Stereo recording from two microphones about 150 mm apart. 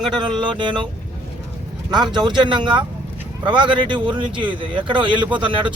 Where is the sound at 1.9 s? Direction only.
30° right (ahead or behind).